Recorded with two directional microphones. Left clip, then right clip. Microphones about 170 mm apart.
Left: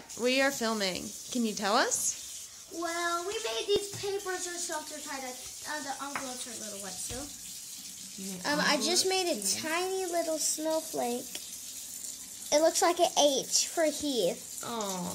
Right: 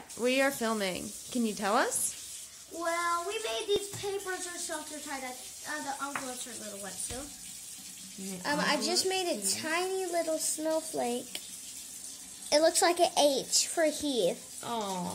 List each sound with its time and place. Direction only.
0.2 s a child's voice: 5° right (ahead or behind)
8.4 s speech: 20° left (ahead or behind)
9.6 s a child's voice: 10° left (ahead or behind)
12.4 s a child's voice: centre (ahead or behind)